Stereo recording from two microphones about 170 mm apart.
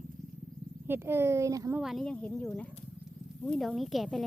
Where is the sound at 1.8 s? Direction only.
Centre (ahead or behind).